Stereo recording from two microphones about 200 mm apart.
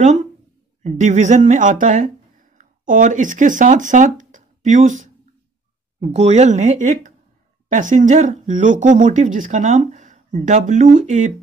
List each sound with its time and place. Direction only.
0.8 s speech: 35° right (ahead or behind)